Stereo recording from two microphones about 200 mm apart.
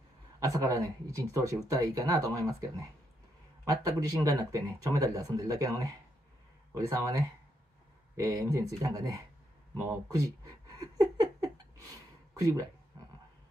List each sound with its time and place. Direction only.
0.4 s speech: 15° right (ahead or behind)
9.8 s a sound: 15° right (ahead or behind)
12.4 s speech: 15° right (ahead or behind)